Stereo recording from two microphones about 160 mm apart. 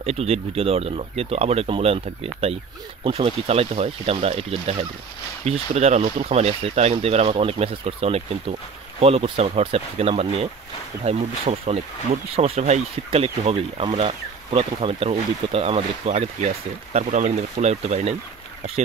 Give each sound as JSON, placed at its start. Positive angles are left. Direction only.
{"t": 0.0, "sound": "speech", "side_deg": -40}